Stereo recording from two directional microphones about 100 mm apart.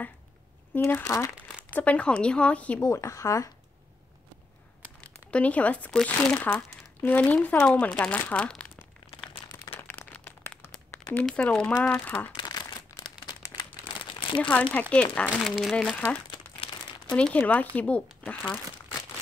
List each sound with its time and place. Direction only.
0.7 s speech: 25° left (ahead or behind)
1.8 s speech: 15° left (ahead or behind)
2.8 s speech: 30° left (ahead or behind)
5.0 s speech: 15° left (ahead or behind)
9.7 s crumpling: 20° left (ahead or behind)
11.1 s speech: 10° left (ahead or behind)
12.4 s a sound: 45° left (ahead or behind)
14.1 s crumpling: 60° left (ahead or behind)
14.5 s speech: 15° left (ahead or behind)
15.4 s speech: centre (ahead or behind)
17.1 s speech: 10° left (ahead or behind)